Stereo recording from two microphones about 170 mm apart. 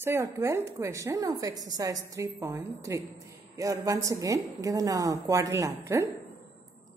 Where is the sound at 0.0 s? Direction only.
15° right (ahead or behind).